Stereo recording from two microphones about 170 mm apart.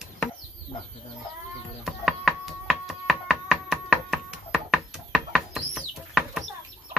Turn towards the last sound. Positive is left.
turn(degrees=0)  # may be behind; listen again after turning